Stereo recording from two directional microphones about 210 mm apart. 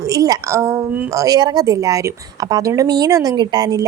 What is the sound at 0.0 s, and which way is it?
A woman's voice, 15° right (ahead or behind).